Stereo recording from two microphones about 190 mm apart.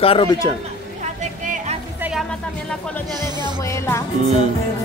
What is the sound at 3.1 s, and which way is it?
Music, 20° right (ahead or behind).